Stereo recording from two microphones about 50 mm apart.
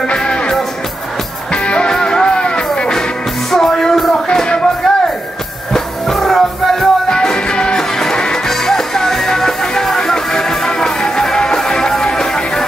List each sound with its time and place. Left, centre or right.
0.1 s music: centre